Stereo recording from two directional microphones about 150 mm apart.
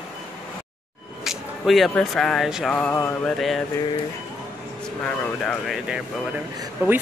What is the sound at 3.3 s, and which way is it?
Speech, centre (ahead or behind).